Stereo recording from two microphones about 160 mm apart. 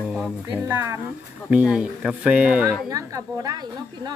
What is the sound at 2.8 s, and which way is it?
A woman's voice, 20° right (ahead or behind).